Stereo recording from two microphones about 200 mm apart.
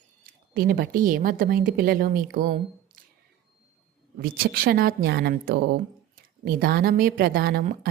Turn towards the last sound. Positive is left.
turn(degrees=-50)  # may be behind; listen again after turning